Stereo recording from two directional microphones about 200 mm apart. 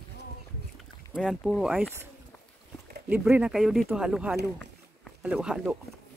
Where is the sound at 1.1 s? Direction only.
Centre (ahead or behind).